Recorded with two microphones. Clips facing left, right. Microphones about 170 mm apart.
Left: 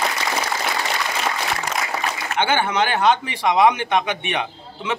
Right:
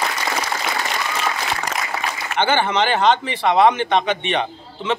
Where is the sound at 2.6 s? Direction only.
10° left (ahead or behind).